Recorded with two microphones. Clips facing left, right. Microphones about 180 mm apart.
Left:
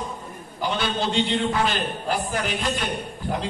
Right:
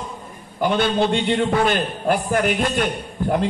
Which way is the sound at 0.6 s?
55° right (ahead or behind).